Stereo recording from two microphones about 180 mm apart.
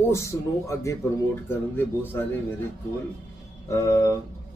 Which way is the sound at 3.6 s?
15° left (ahead or behind).